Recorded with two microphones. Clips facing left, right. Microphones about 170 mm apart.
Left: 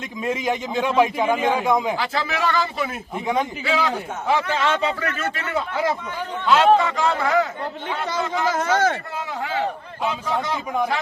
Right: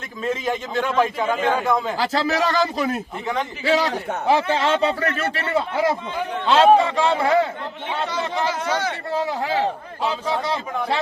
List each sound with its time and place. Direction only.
0.2 s a man's voice: 10° left (ahead or behind)
2.0 s a man's voice: 40° right (ahead or behind)
8.4 s speech: 45° left (ahead or behind)
9.1 s a man's voice: 35° right (ahead or behind)